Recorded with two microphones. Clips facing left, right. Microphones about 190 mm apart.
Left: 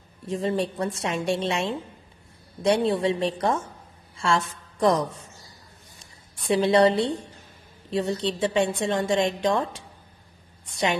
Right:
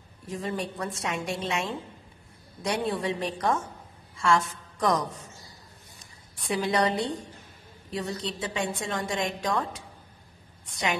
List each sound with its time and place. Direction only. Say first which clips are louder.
0.3 s a woman's voice: left 6 dB; 25° left (ahead or behind)
6.5 s a woman's voice: left 7 dB; 30° left (ahead or behind)
7.9 s a woman's voice: left 7 dB; 25° left (ahead or behind)